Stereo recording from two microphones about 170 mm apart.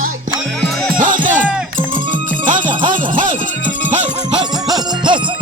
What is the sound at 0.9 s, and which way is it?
Music, 55° right (ahead or behind).